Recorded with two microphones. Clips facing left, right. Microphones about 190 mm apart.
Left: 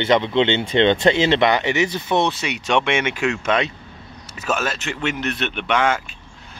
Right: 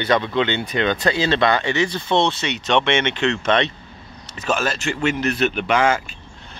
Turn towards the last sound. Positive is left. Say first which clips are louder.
# right 2 dB
turn(degrees=0)  # may be behind; listen again after turning